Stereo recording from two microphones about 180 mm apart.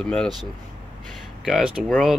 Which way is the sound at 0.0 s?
5° left (ahead or behind).